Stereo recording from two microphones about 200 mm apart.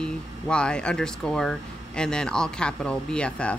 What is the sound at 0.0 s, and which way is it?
A woman's voice, 5° left (ahead or behind).